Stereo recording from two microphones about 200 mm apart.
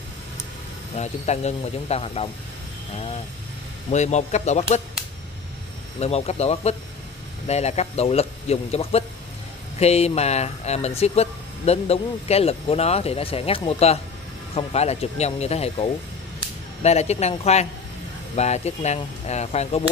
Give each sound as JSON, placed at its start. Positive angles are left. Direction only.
{"t": 0.9, "sound": "speech", "side_deg": 35}
{"t": 3.9, "sound": "speech", "side_deg": 35}
{"t": 5.9, "sound": "speech", "side_deg": 30}